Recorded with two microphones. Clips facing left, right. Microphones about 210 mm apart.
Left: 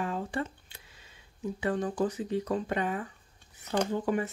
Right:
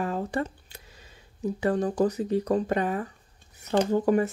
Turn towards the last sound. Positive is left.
turn(degrees=-40)  # may be behind; listen again after turning